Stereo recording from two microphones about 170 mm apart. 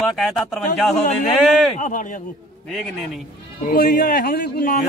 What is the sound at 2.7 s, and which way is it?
Speech, centre (ahead or behind).